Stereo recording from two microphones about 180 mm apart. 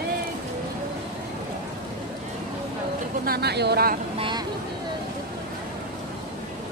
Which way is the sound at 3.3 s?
65° right (ahead or behind).